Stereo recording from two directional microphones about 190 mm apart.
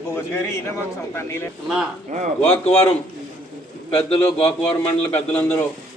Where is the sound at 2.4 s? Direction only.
10° left (ahead or behind).